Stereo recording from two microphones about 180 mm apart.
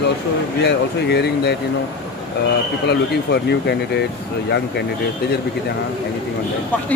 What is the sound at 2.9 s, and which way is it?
Speech, 70° left (ahead or behind).